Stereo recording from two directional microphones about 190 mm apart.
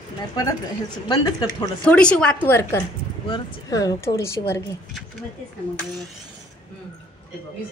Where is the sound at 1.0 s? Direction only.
25° left (ahead or behind).